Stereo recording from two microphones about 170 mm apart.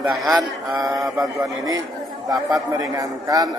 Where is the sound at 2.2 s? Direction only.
20° right (ahead or behind).